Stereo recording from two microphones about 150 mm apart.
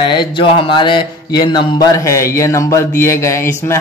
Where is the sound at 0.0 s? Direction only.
30° left (ahead or behind).